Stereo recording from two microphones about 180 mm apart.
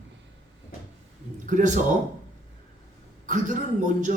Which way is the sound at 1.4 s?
45° right (ahead or behind).